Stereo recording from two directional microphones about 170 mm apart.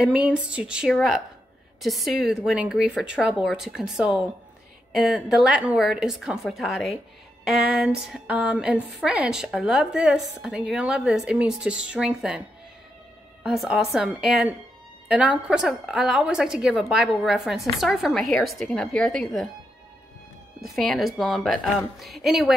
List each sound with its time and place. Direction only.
0.0 s a woman's voice: 5° right (ahead or behind)
20.6 s a woman's voice: centre (ahead or behind)